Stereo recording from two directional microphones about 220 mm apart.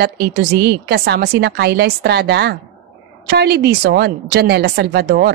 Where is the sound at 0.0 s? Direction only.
45° right (ahead or behind).